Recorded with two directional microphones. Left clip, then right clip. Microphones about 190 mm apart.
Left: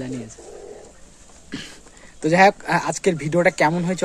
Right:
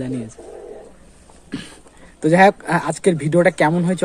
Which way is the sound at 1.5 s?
5° left (ahead or behind).